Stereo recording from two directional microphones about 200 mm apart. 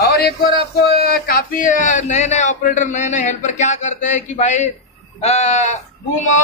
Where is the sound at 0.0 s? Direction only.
50° left (ahead or behind).